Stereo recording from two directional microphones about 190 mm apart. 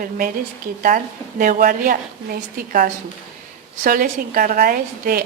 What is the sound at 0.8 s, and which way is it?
A woman's voice, 45° right (ahead or behind).